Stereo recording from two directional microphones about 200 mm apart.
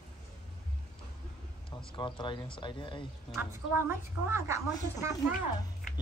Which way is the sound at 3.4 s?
10° right (ahead or behind).